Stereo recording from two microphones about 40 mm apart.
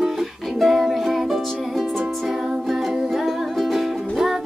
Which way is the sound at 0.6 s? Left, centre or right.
Centre.